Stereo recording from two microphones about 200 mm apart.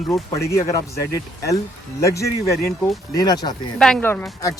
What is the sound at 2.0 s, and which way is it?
Speech, 15° left (ahead or behind).